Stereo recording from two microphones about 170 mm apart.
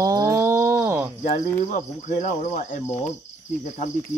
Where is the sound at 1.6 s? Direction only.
45° left (ahead or behind).